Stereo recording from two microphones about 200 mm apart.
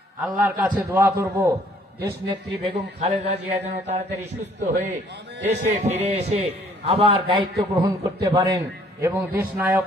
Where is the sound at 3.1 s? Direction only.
30° right (ahead or behind).